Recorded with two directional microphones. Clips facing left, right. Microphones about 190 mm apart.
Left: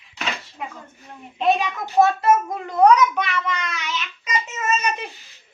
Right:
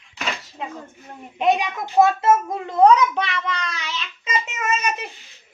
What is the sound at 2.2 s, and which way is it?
A child's voice, 25° right (ahead or behind).